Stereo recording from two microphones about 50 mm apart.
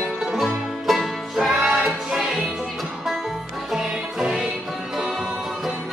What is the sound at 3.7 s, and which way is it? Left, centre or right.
Music, centre.